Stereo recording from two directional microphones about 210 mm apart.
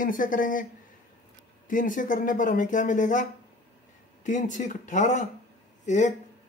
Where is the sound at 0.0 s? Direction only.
40° left (ahead or behind).